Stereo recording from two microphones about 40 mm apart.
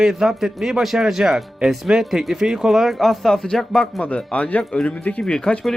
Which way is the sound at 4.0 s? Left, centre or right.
Left.